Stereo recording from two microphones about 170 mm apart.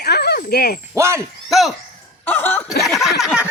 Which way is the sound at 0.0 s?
70° left (ahead or behind).